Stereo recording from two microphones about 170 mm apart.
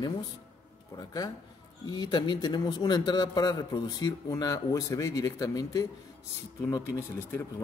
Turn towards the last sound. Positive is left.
turn(degrees=15)  # may be behind; listen again after turning